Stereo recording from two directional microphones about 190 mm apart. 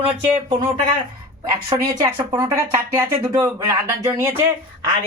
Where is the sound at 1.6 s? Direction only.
25° right (ahead or behind).